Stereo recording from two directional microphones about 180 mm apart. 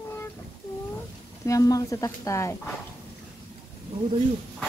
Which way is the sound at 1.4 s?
20° left (ahead or behind).